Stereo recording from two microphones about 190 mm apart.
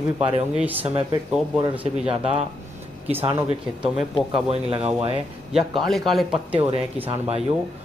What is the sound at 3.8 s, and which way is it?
Speech, 5° right (ahead or behind).